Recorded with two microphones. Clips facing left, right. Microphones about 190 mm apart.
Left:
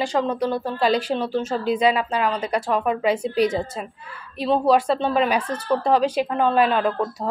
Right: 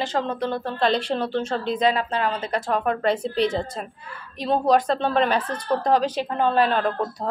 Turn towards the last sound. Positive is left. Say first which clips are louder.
# left 1 dB
turn(degrees=10)  # may be behind; listen again after turning